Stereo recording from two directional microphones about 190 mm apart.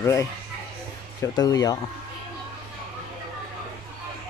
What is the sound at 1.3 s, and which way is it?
Speech, 20° left (ahead or behind).